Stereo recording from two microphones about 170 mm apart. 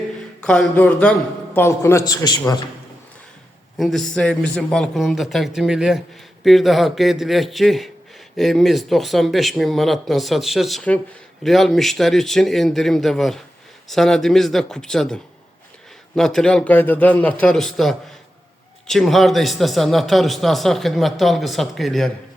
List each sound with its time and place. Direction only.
0.4 s a man's voice: 5° left (ahead or behind); by 2.4 s 20° left (ahead or behind)
3.8 s a man's voice: centre (ahead or behind)